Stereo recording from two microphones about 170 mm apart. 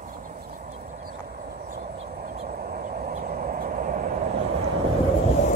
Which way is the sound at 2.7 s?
60° right (ahead or behind).